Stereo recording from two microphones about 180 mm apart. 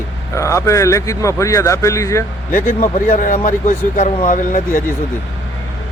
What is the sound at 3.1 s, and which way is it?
Speech, 50° left (ahead or behind).